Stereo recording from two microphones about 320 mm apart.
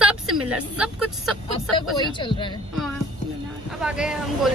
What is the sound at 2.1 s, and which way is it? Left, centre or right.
Speech, centre.